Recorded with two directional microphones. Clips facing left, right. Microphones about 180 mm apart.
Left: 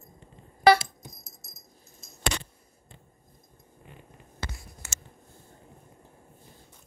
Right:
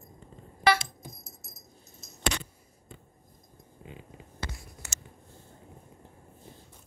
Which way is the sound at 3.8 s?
90° right.